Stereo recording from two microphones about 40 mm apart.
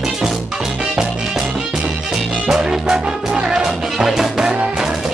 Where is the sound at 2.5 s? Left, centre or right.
Centre.